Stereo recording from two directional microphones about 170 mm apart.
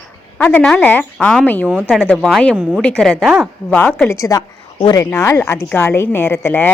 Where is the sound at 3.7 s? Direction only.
10° left (ahead or behind).